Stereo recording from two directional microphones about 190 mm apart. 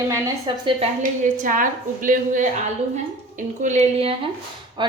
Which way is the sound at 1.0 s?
45° right (ahead or behind).